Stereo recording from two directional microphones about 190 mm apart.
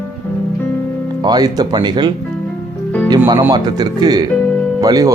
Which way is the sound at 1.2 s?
20° right (ahead or behind).